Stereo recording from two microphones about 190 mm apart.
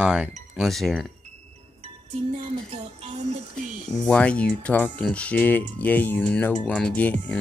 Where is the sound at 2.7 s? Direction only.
35° right (ahead or behind).